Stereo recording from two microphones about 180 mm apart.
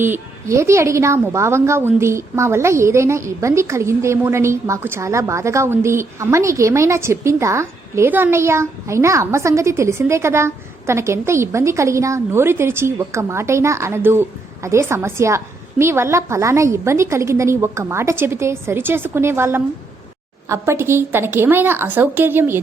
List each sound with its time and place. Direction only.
0.0 s a woman's voice: 15° right (ahead or behind)